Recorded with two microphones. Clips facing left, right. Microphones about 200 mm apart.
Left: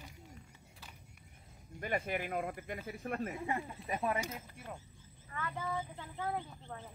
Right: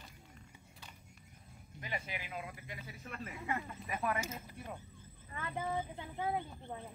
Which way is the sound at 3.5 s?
30° left (ahead or behind).